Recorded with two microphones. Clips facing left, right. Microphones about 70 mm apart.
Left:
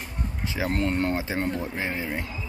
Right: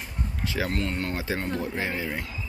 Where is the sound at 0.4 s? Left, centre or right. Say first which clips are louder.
Left 2 dB; left.